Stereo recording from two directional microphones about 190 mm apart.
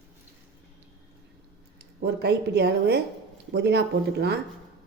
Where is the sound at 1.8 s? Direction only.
60° right (ahead or behind).